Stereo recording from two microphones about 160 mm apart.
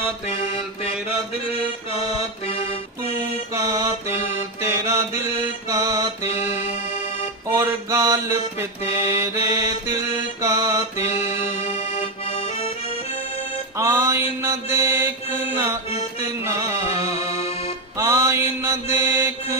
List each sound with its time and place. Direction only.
0.3 s music: 40° left (ahead or behind)
3.5 s mantra: 20° right (ahead or behind)
4.6 s music: 15° right (ahead or behind)
6.6 s music: 40° left (ahead or behind)
7.5 s music: 20° right (ahead or behind)
10.4 s mantra: 20° right (ahead or behind)
11.0 s accordion: 40° left (ahead or behind)
13.7 s music: 15° right (ahead or behind)
14.4 s mantra: 15° right (ahead or behind)
17.9 s mantra: 15° right (ahead or behind)